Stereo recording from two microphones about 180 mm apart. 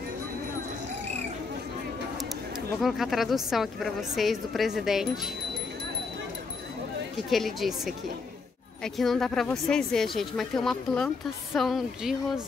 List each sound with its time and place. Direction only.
2.8 s a woman's voice: centre (ahead or behind)
7.2 s a woman's voice: centre (ahead or behind)